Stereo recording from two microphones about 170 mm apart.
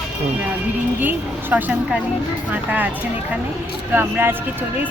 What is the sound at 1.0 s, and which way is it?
Speech, 10° right (ahead or behind).